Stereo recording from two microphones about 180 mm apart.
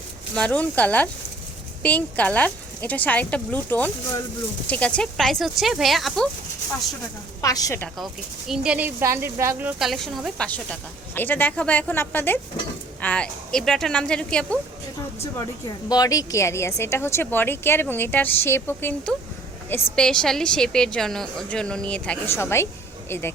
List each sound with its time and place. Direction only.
0.3 s a woman's voice: 5° left (ahead or behind)
7.4 s a woman's voice: 20° left (ahead or behind)
7.8 s speech: centre (ahead or behind)
15.2 s a woman's voice: 25° left (ahead or behind)